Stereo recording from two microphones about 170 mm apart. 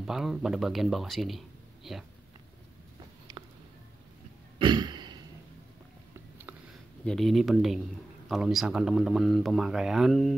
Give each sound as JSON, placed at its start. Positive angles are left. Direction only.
{"t": 0.0, "sound": "speech", "side_deg": 0}
{"t": 4.6, "sound": "throat clearing", "side_deg": -25}
{"t": 7.1, "sound": "speech", "side_deg": 0}